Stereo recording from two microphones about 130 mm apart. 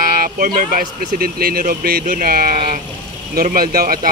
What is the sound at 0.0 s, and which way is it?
Speech, 90° right.